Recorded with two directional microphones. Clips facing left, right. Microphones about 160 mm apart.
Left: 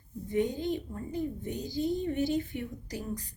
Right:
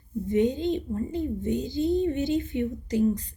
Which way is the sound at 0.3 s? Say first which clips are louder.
Right 6 dB; 20° right (ahead or behind).